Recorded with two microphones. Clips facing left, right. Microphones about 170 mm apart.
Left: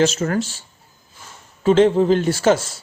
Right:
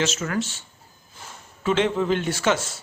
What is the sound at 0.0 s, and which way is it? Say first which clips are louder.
Speech: left 7 dB; 35° left (ahead or behind).